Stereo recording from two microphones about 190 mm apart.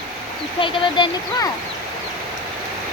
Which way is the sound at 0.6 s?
25° left (ahead or behind).